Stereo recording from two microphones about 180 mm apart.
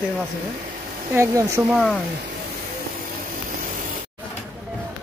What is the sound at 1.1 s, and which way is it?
Speech, 15° right (ahead or behind).